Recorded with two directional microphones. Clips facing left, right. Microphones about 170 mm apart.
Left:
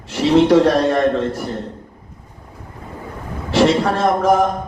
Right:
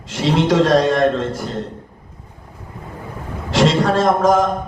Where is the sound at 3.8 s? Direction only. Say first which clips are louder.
Right 2 dB; 75° right (ahead or behind).